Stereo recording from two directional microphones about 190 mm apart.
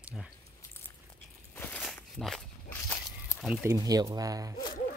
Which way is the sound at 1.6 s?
5° left (ahead or behind).